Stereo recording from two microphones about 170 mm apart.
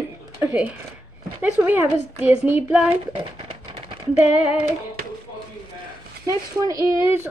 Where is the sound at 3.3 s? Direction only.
35° right (ahead or behind).